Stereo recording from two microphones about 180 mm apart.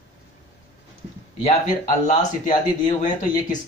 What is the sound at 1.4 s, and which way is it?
Speech, 45° left (ahead or behind).